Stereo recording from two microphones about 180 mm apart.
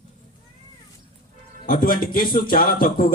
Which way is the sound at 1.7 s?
50° left (ahead or behind).